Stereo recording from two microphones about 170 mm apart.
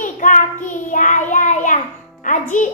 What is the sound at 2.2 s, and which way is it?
Music, 45° left (ahead or behind).